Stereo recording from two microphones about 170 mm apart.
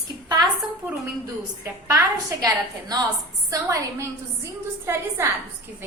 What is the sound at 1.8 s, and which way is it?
A woman's voice, 20° right (ahead or behind).